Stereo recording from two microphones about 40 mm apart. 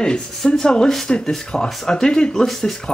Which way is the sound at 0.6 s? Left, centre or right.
Centre.